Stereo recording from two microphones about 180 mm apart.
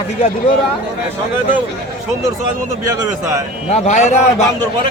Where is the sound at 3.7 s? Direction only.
40° left (ahead or behind).